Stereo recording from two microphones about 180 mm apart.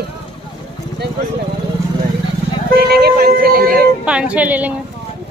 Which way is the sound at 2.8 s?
65° right (ahead or behind).